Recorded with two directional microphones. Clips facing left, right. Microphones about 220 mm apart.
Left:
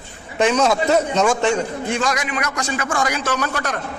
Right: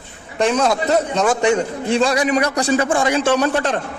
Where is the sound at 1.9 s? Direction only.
30° right (ahead or behind).